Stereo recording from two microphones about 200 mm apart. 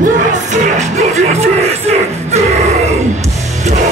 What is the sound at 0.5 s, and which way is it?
Music, 35° right (ahead or behind).